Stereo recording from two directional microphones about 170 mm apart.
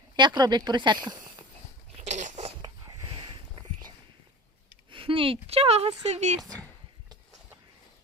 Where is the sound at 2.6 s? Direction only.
25° right (ahead or behind).